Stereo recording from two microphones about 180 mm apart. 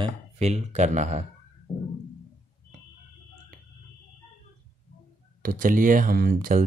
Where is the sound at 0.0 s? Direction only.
40° right (ahead or behind).